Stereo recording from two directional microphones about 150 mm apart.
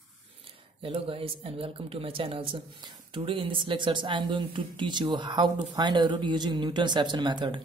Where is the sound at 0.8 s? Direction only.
35° right (ahead or behind).